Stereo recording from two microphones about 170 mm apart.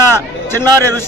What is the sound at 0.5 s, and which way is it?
Speech, 15° left (ahead or behind).